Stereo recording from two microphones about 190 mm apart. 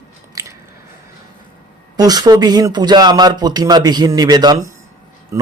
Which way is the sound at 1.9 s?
20° right (ahead or behind).